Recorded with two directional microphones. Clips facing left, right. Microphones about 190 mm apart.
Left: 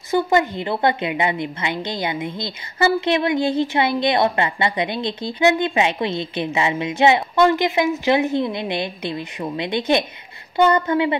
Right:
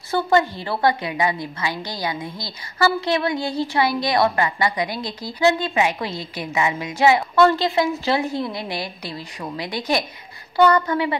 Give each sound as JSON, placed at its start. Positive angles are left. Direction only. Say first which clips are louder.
{"t": 0.1, "sound": "a woman's voice", "louder": "left 1 dB", "side_deg": 20}